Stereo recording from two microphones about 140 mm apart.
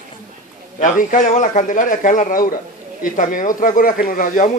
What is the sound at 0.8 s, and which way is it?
Speech, 65° left (ahead or behind).